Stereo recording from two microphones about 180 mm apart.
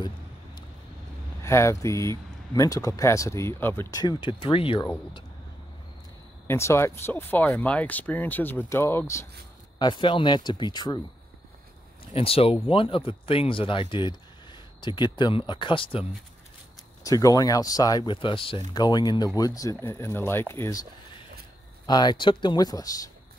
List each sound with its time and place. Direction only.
1.4 s speech: 15° left (ahead or behind)
4.0 s speech: 25° left (ahead or behind)
6.4 s speech: 15° left (ahead or behind)
12.1 s speech: 30° left (ahead or behind)
17.0 s speech: 20° left (ahead or behind)
21.8 s speech: 25° left (ahead or behind)